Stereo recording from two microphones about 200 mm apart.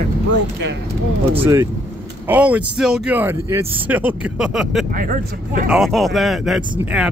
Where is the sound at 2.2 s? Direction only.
5° right (ahead or behind).